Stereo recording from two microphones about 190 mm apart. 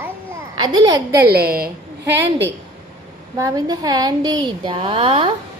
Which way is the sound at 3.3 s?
20° right (ahead or behind).